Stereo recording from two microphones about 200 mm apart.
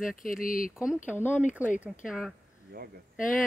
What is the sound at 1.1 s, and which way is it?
Speech, 10° left (ahead or behind).